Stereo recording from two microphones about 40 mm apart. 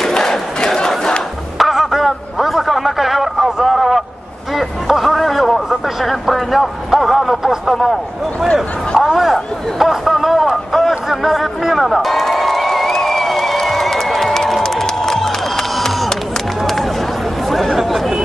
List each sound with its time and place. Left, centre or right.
0.0 s crowd: centre
0.6 s battle cry: centre
1.6 s a sound: centre
8.9 s a sound: centre
10.5 s music: centre
17.5 s chatter: centre